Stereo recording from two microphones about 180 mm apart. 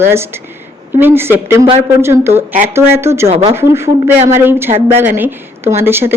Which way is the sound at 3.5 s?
15° right (ahead or behind).